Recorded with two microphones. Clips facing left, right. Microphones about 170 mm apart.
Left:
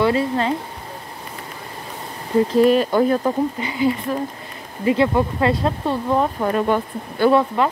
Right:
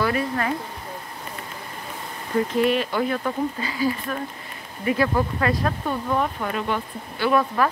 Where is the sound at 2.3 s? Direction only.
35° left (ahead or behind).